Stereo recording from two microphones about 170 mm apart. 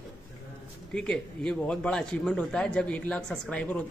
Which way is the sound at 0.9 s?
5° left (ahead or behind).